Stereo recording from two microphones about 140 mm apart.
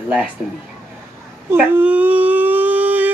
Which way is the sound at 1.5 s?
15° right (ahead or behind).